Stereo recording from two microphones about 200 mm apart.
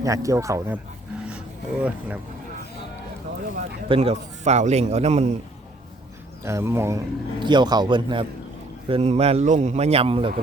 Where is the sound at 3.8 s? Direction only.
30° right (ahead or behind).